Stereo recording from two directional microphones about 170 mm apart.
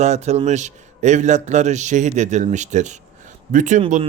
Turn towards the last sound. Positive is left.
turn(degrees=-45)  # may be behind; listen again after turning